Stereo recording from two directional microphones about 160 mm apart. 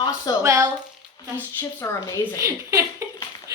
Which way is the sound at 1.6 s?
15° left (ahead or behind).